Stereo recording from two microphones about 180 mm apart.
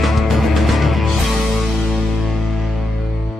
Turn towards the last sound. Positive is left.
turn(degrees=0)  # may be behind; listen again after turning